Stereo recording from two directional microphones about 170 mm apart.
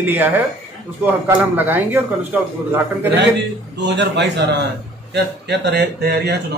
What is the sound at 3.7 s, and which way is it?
A man's voice, 90° right.